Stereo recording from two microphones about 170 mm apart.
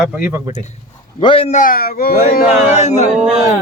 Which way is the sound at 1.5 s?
50° left (ahead or behind).